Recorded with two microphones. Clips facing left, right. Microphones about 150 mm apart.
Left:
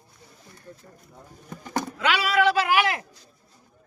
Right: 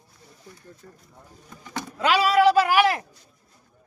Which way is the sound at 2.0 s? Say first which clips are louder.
Right 4 dB; 35° right (ahead or behind).